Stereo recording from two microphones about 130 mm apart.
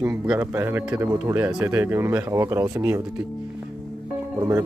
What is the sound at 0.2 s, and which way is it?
Speech, 10° right (ahead or behind).